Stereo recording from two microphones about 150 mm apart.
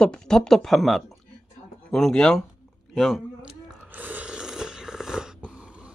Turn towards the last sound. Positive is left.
turn(degrees=-5)  # may be behind; listen again after turning